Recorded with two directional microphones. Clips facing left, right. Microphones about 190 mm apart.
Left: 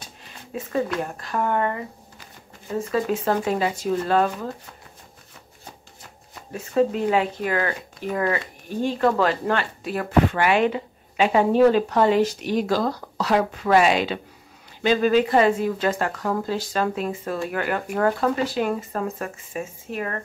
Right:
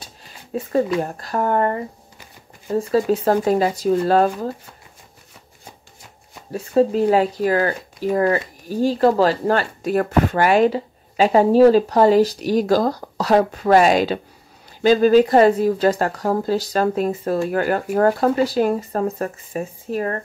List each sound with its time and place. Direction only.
0.0 s a sound: 35° right (ahead or behind)
1.0 s speech: 35° right (ahead or behind)
6.5 s speech: 35° right (ahead or behind)